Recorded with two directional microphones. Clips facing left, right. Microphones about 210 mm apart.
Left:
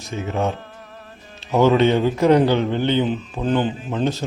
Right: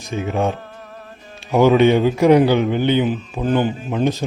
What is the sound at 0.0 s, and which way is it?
A man's voice, 15° right (ahead or behind).